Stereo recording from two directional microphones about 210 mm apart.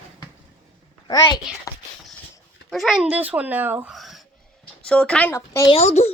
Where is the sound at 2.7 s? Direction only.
Centre (ahead or behind).